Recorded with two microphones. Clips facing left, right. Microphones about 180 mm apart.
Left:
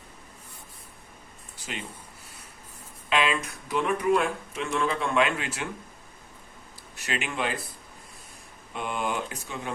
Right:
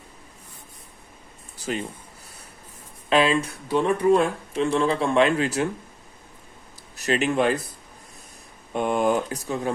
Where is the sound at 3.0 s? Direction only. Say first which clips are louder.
Right 6 dB; 35° right (ahead or behind).